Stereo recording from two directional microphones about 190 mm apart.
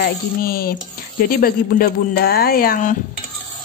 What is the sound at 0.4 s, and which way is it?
Speech, 50° left (ahead or behind).